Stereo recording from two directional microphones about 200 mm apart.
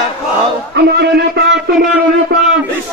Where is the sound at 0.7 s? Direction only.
55° right (ahead or behind).